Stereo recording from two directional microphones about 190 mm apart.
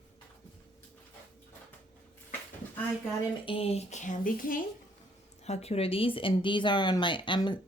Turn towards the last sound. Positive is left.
turn(degrees=25)  # may be behind; listen again after turning